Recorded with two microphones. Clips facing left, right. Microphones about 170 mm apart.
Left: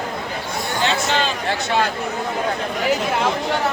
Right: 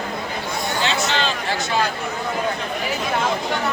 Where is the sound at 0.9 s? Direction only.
50° left (ahead or behind).